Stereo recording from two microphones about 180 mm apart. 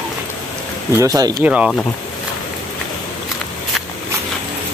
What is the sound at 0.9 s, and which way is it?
Speech, 20° right (ahead or behind).